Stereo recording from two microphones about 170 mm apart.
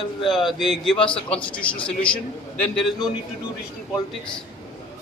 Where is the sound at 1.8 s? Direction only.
5° left (ahead or behind).